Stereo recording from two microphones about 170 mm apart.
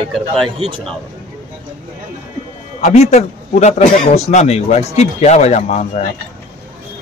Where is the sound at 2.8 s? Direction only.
40° left (ahead or behind).